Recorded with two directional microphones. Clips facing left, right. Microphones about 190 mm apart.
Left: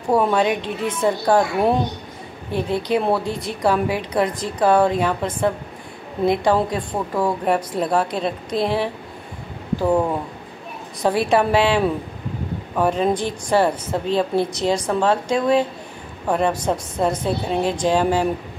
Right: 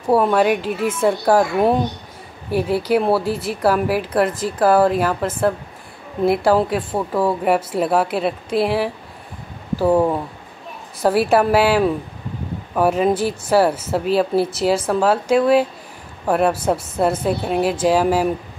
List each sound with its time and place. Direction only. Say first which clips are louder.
0.1 s a woman's voice: right 2 dB; 5° right (ahead or behind)